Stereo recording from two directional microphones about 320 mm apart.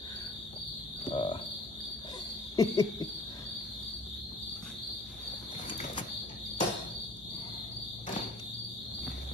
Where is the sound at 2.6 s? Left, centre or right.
Centre.